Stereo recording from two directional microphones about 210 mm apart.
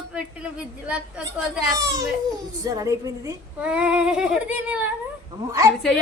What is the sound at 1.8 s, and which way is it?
A woman's voice, 15° right (ahead or behind).